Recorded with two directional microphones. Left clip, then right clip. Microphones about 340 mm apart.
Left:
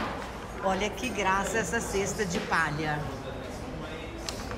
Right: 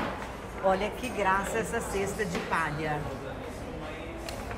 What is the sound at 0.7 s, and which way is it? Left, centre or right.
Speech, centre.